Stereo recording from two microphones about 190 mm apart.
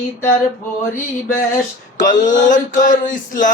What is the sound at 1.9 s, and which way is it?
Male singing, 45° left (ahead or behind).